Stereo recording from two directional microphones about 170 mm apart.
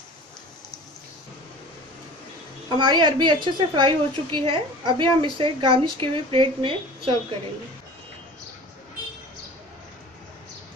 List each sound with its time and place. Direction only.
2.8 s a woman's voice: 25° right (ahead or behind)